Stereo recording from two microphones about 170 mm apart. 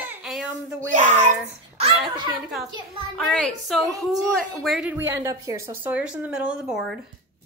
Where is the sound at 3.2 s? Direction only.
5° left (ahead or behind).